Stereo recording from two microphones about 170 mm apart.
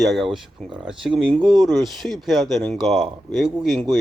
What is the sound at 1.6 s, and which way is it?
Speech, centre (ahead or behind).